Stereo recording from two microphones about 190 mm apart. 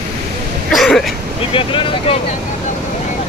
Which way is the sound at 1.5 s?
30° left (ahead or behind).